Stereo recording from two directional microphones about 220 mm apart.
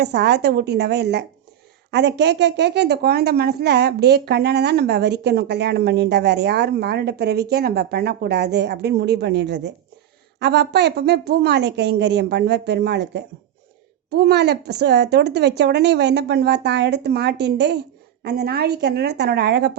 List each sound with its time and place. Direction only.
0.0 s a woman's voice: 50° right (ahead or behind)